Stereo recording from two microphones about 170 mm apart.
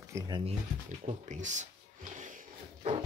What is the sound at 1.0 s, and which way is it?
Speech, 45° right (ahead or behind).